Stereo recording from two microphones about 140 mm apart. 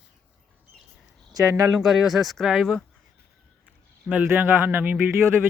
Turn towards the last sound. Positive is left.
turn(degrees=-15)  # may be behind; listen again after turning